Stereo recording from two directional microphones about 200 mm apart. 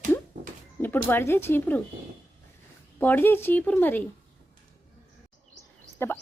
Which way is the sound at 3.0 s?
10° left (ahead or behind).